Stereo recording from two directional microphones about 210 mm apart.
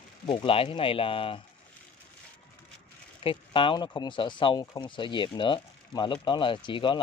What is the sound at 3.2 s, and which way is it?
Speech, 25° left (ahead or behind).